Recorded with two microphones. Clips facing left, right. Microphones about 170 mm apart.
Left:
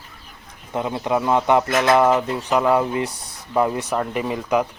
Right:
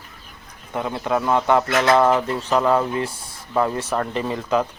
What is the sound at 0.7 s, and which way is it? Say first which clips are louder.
Speech: left 1 dB; 20° left (ahead or behind).